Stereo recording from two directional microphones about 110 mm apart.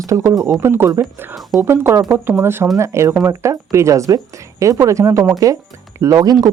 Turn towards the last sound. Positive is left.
turn(degrees=-35)  # may be behind; listen again after turning